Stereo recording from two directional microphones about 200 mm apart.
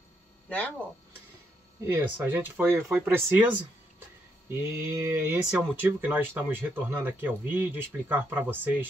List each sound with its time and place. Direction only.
0.5 s speech: 5° left (ahead or behind)
1.9 s speech: 10° right (ahead or behind)
4.5 s speech: 15° right (ahead or behind)